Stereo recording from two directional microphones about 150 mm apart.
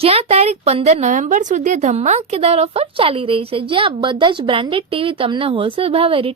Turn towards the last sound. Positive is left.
turn(degrees=-40)  # may be behind; listen again after turning